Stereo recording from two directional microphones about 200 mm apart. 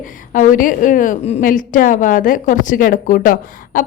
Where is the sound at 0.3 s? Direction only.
40° left (ahead or behind).